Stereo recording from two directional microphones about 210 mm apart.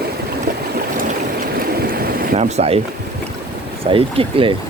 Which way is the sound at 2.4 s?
30° right (ahead or behind).